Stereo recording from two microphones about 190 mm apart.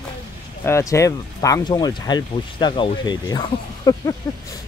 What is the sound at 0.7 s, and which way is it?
Speech, 15° left (ahead or behind).